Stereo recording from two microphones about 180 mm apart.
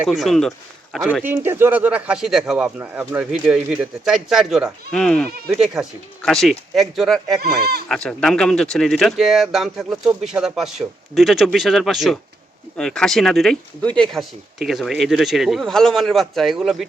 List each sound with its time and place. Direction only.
0.0 s speech: centre (ahead or behind)
1.2 s speech: 10° right (ahead or behind)
7.4 s speech: 60° right (ahead or behind)
7.9 s speech: 5° left (ahead or behind)